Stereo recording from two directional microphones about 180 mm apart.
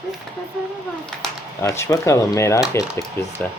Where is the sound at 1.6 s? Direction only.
15° left (ahead or behind).